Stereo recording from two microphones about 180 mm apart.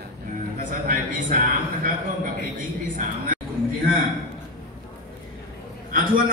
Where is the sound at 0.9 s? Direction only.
50° right (ahead or behind).